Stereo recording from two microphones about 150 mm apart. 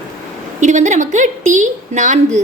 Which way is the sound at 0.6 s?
55° right (ahead or behind).